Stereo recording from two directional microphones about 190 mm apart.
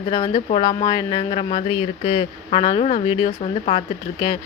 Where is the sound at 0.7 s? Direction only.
25° left (ahead or behind).